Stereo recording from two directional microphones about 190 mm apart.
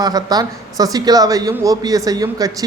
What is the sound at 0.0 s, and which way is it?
Speech, 20° right (ahead or behind).